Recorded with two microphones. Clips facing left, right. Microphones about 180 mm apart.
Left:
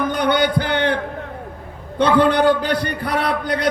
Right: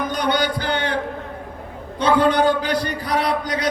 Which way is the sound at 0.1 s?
55° left (ahead or behind).